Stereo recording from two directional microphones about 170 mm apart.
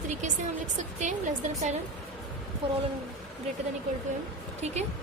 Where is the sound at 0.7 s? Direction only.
45° right (ahead or behind).